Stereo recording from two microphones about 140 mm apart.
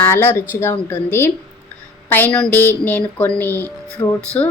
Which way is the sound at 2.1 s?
15° left (ahead or behind).